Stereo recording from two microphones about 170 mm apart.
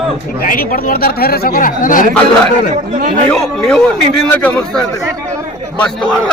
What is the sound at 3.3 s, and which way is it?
A man's voice, 5° left (ahead or behind).